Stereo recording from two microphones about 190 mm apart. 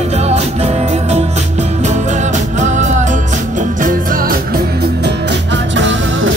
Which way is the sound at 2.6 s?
40° right (ahead or behind).